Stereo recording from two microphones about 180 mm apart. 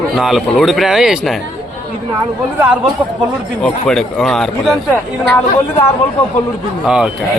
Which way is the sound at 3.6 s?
5° left (ahead or behind).